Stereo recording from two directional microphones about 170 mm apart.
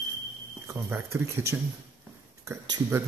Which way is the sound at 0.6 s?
15° right (ahead or behind).